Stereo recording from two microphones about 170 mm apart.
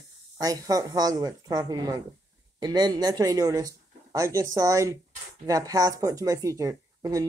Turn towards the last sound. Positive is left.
turn(degrees=-20)  # may be behind; listen again after turning